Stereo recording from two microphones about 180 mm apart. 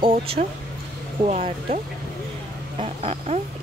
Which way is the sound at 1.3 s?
35° right (ahead or behind).